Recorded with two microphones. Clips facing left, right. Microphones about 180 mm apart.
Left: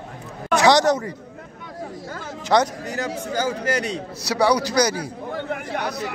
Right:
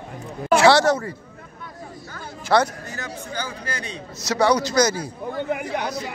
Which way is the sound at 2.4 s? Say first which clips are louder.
Even; 15° left (ahead or behind).